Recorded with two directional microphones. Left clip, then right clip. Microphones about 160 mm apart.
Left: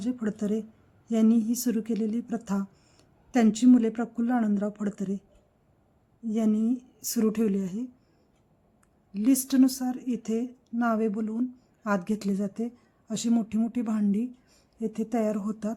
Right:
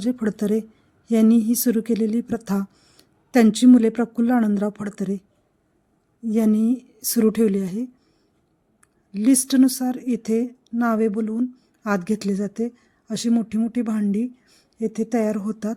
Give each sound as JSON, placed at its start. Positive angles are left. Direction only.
{"t": 0.0, "sound": "speech", "side_deg": -25}
{"t": 6.2, "sound": "speech", "side_deg": -25}
{"t": 9.1, "sound": "speech", "side_deg": -15}